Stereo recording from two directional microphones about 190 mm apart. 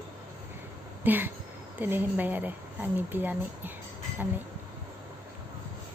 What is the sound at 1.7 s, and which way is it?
Speech, 10° right (ahead or behind).